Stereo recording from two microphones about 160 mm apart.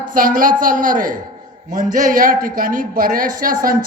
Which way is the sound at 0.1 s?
60° right (ahead or behind).